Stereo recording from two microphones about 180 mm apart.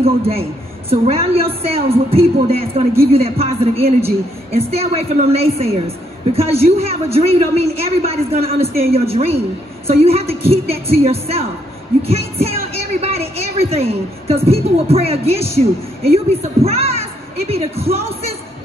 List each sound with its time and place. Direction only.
0.0 s a woman's voice: 35° right (ahead or behind)